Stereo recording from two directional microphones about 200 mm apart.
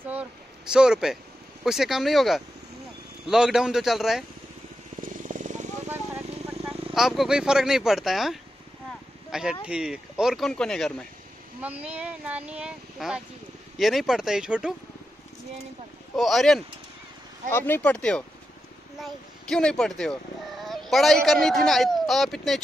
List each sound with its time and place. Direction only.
0.1 s speech: 5° right (ahead or behind)
5.0 s vehicle: 40° right (ahead or behind)
6.9 s speech: centre (ahead or behind)
11.6 s speech: 5° right (ahead or behind)
16.2 s speech: centre (ahead or behind)